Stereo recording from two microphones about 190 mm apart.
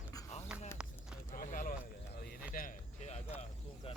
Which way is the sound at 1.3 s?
45° left (ahead or behind).